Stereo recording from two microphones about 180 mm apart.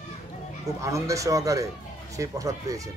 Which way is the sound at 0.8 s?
15° right (ahead or behind).